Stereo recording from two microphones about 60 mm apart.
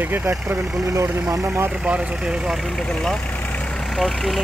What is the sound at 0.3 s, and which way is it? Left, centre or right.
Speech, right.